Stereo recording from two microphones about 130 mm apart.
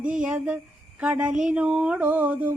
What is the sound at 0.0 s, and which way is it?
Speech, 10° right (ahead or behind).